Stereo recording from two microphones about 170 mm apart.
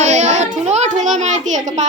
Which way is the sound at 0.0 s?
45° right (ahead or behind).